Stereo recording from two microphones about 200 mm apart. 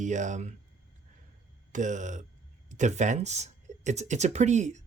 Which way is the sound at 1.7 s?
40° right (ahead or behind).